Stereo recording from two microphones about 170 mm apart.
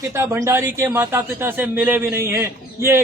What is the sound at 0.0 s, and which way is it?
A man's voice, 15° right (ahead or behind).